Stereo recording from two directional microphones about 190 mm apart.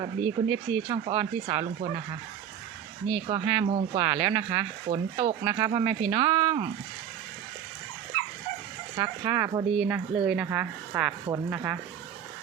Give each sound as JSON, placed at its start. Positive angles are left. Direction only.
{"t": 0.4, "sound": "speech", "side_deg": -35}
{"t": 3.2, "sound": "speech", "side_deg": -25}
{"t": 9.0, "sound": "speech", "side_deg": -20}
{"t": 9.7, "sound": "speech", "side_deg": -5}